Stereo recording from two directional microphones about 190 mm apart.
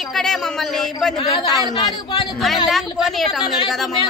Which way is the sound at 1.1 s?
20° left (ahead or behind).